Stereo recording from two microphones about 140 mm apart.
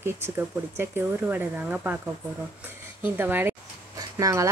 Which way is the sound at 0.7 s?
15° right (ahead or behind).